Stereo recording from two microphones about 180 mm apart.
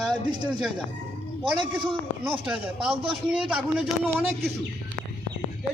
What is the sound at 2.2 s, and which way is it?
A man's voice, 10° right (ahead or behind).